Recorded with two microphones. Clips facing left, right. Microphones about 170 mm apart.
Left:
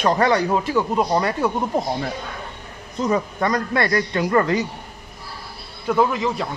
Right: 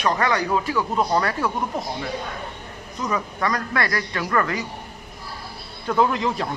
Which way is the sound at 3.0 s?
25° left (ahead or behind).